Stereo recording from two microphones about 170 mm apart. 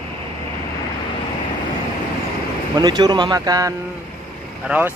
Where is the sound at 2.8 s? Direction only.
25° right (ahead or behind).